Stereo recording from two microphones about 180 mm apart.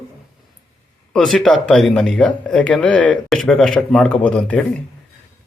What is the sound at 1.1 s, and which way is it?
Speech, centre (ahead or behind).